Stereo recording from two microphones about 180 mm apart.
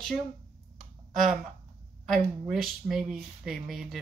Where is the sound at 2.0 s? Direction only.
Centre (ahead or behind).